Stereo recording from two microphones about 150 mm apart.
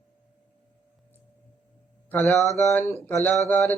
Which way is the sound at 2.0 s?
15° left (ahead or behind).